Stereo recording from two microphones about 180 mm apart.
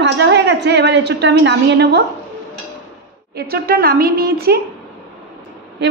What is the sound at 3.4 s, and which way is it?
A woman's voice, 55° right (ahead or behind).